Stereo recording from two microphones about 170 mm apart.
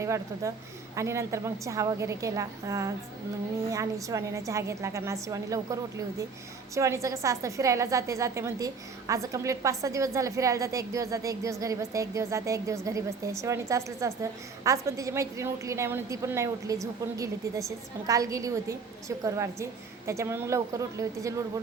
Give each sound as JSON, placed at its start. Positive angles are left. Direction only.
{"t": 0.0, "sound": "a woman's voice", "side_deg": -15}